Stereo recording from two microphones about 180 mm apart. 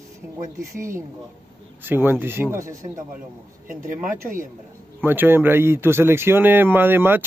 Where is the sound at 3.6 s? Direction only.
50° right (ahead or behind).